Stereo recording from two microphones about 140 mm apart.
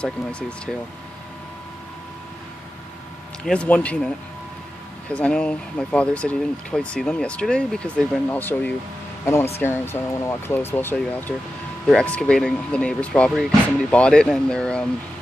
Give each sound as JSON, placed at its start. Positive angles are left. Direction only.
{"t": 0.0, "sound": "speech", "side_deg": 10}
{"t": 3.4, "sound": "speech", "side_deg": 10}
{"t": 5.1, "sound": "speech", "side_deg": 5}